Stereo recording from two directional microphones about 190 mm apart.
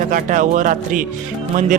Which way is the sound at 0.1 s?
45° right (ahead or behind).